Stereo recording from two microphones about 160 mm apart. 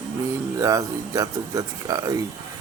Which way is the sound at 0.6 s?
20° right (ahead or behind).